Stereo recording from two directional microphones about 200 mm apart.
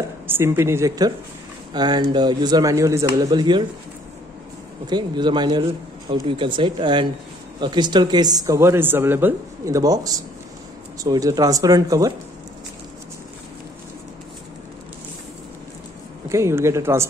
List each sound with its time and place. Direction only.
0.3 s speech: 10° right (ahead or behind)
4.8 s speech: 20° right (ahead or behind)
16.3 s speech: 15° right (ahead or behind)